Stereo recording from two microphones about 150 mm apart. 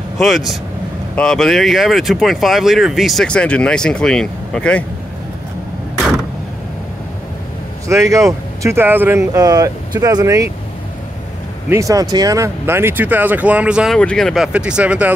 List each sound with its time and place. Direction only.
1.1 s speech: 5° left (ahead or behind)
7.9 s speech: 20° right (ahead or behind)
11.7 s speech: 20° right (ahead or behind); by 13.9 s 5° right (ahead or behind)
13.9 s speech: 5° left (ahead or behind)